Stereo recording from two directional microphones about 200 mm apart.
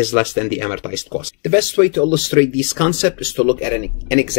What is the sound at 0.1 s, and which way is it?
Speech, 10° left (ahead or behind).